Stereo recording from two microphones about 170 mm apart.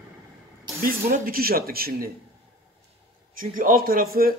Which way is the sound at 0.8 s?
55° right (ahead or behind).